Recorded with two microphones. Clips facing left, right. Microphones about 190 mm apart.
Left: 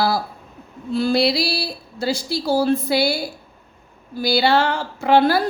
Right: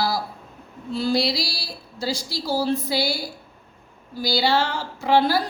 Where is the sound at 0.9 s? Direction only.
55° left (ahead or behind).